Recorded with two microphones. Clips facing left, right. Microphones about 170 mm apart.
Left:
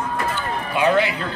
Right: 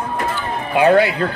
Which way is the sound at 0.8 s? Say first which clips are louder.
Right 6 dB; 60° right (ahead or behind).